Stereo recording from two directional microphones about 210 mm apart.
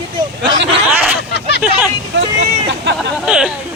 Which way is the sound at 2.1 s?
60° right (ahead or behind).